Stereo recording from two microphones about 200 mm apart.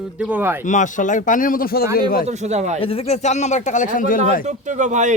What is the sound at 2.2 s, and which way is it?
Speech, 35° right (ahead or behind).